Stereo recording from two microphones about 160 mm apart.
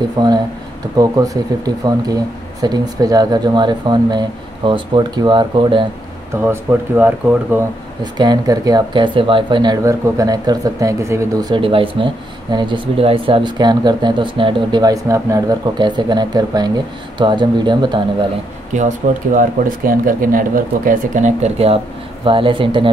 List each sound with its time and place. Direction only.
0.2 s speech: 25° right (ahead or behind)
6.4 s speech: 10° right (ahead or behind)
8.0 s speech: 25° right (ahead or behind)
11.5 s speech: 35° right (ahead or behind)
18.7 s speech: 50° right (ahead or behind); by 22.8 s 30° right (ahead or behind)